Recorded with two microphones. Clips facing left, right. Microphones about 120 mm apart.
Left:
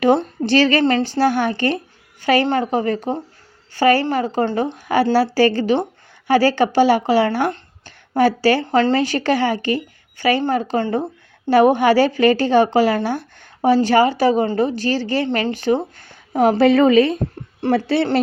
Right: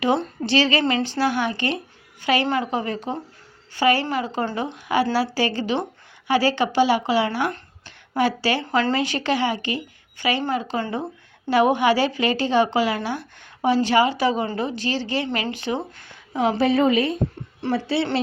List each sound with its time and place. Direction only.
0.0 s a woman's voice: 50° left (ahead or behind)
16.6 s a woman's voice: 85° left
17.7 s speech: 65° left (ahead or behind)